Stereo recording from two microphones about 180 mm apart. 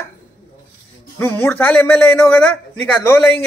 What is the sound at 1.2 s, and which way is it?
Speech, 10° left (ahead or behind).